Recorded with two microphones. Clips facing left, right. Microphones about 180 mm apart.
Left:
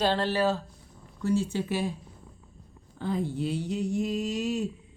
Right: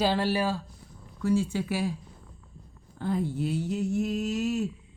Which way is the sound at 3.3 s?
5° right (ahead or behind).